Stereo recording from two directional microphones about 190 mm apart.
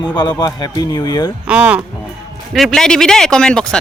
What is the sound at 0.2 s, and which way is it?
Speech, 20° left (ahead or behind).